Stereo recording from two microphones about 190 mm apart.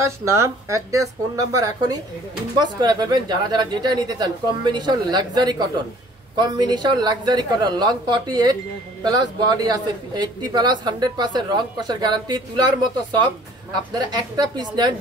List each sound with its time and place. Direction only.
0.0 s a man's voice: 15° right (ahead or behind)